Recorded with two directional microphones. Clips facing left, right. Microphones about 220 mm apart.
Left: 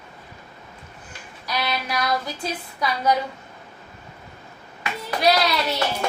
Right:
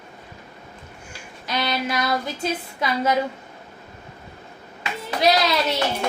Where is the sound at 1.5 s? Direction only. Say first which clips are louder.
Right 2 dB; 25° right (ahead or behind).